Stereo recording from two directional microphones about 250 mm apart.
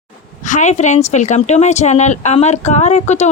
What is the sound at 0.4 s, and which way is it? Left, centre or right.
A woman's voice, left.